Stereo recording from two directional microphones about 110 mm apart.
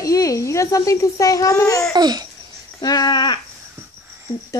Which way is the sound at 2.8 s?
35° left (ahead or behind).